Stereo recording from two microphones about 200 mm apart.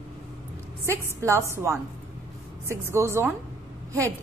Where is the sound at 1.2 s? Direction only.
15° right (ahead or behind).